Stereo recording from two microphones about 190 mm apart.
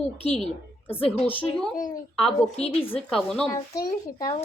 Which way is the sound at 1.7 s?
45° left (ahead or behind).